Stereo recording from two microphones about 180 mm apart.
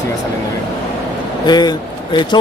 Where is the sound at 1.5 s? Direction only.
25° left (ahead or behind).